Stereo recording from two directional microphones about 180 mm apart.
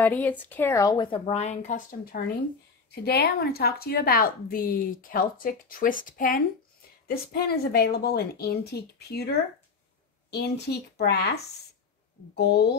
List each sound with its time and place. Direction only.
0.0 s speech: 10° left (ahead or behind); by 2.2 s 50° left (ahead or behind)
2.9 s a woman's voice: 65° left (ahead or behind)